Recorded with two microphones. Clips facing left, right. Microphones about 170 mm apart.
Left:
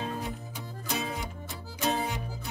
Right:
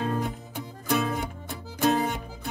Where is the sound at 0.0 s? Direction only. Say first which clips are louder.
Right 6 dB; 60° right (ahead or behind).